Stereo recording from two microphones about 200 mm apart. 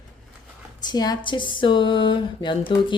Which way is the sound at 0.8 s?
20° left (ahead or behind).